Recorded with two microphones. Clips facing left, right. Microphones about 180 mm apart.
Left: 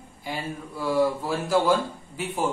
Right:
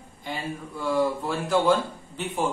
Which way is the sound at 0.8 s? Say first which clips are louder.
Left 1 dB; centre (ahead or behind).